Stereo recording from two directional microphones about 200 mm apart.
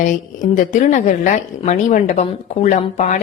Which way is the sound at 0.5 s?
40° left (ahead or behind).